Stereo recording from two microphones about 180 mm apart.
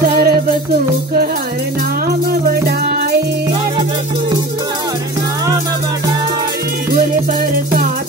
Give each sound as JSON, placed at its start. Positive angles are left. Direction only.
{"t": 0.0, "sound": "music", "side_deg": -55}